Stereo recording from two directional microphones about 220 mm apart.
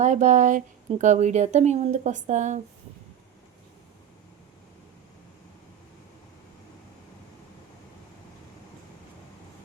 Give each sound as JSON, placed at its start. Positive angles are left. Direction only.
{"t": 0.0, "sound": "speech", "side_deg": -35}